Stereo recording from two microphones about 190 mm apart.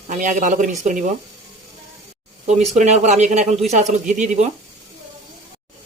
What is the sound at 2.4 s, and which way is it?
Speech, 40° right (ahead or behind).